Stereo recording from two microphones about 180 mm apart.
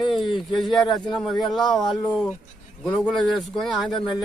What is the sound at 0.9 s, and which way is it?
Speech, 25° left (ahead or behind).